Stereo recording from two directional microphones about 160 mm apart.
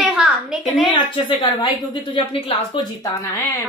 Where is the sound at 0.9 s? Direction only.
30° left (ahead or behind).